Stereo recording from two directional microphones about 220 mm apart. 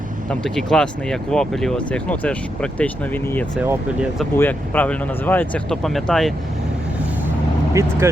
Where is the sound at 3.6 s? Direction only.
5° right (ahead or behind).